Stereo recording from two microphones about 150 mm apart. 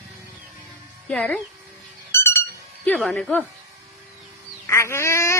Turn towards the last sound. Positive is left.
turn(degrees=20)  # may be behind; listen again after turning